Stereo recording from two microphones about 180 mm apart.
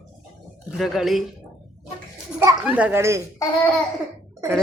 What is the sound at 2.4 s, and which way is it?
Speech, 10° right (ahead or behind).